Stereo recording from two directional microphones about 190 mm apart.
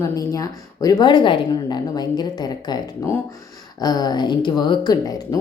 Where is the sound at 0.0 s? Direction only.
20° left (ahead or behind).